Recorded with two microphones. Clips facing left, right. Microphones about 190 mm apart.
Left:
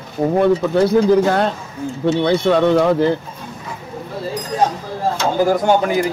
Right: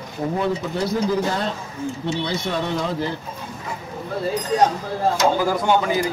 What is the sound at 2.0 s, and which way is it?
Speech, 55° left (ahead or behind).